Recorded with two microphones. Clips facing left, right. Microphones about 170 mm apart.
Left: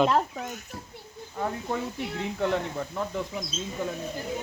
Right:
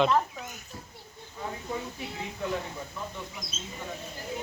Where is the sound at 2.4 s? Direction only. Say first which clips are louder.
Left 6 dB; 85° left.